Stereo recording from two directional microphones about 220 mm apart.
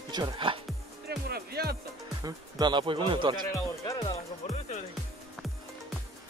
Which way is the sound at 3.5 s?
15° left (ahead or behind).